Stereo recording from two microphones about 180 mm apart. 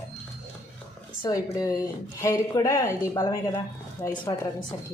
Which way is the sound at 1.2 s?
20° left (ahead or behind).